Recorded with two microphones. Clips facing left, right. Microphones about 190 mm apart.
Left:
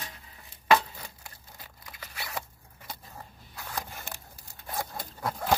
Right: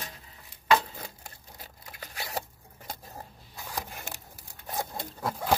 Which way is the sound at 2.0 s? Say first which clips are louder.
Right 3 dB; 40° right (ahead or behind).